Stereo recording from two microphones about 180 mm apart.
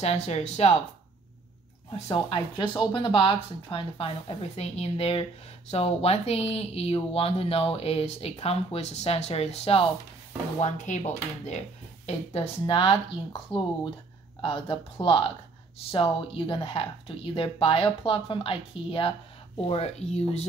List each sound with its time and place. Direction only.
0.0 s speech: 35° left (ahead or behind)
1.9 s speech: 30° left (ahead or behind)